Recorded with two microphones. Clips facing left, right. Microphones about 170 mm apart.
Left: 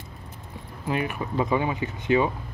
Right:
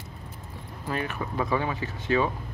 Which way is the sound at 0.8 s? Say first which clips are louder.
Left 3 dB; 15° left (ahead or behind).